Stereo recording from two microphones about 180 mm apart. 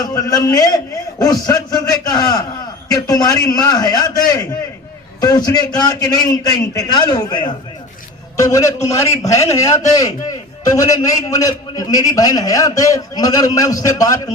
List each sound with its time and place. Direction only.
0.0 s a man's voice: 20° left (ahead or behind)